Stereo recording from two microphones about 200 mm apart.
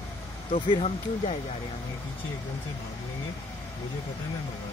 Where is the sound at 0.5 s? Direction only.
30° left (ahead or behind).